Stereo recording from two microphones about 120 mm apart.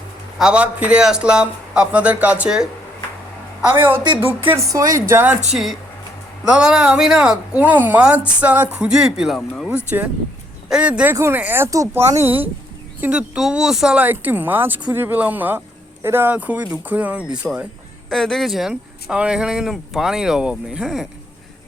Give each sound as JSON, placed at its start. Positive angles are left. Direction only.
{"t": 0.3, "sound": "speech", "side_deg": -5}
{"t": 4.5, "sound": "speech", "side_deg": -30}
{"t": 6.4, "sound": "speech", "side_deg": -10}
{"t": 11.1, "sound": "speech", "side_deg": -20}
{"t": 18.1, "sound": "speech", "side_deg": 5}